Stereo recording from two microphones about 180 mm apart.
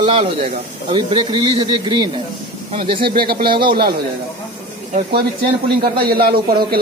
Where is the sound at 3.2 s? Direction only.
55° right (ahead or behind).